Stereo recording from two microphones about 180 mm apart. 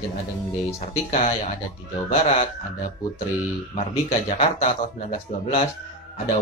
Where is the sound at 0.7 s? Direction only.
40° left (ahead or behind).